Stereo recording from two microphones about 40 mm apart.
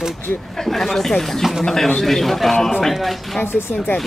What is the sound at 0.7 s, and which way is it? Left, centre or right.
Speech, centre.